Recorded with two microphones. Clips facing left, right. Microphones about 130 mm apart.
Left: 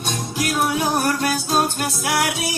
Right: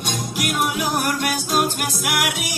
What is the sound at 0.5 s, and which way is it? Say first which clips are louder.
Music: left 2 dB; 30° left (ahead or behind).